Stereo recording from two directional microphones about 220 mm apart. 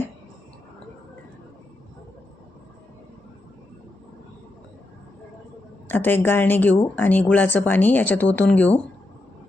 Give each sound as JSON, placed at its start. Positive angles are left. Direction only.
{"t": 5.9, "sound": "speech", "side_deg": 10}